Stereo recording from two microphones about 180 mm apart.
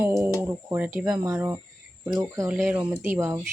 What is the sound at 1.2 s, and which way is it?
Speech, 15° right (ahead or behind).